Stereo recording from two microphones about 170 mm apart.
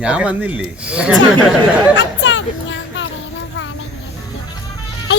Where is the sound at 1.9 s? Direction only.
90° left.